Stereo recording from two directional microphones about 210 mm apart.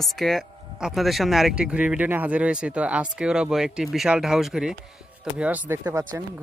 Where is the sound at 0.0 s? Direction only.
Centre (ahead or behind).